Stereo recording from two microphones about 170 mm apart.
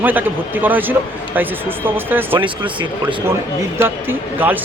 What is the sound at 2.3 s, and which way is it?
Speech, 30° right (ahead or behind).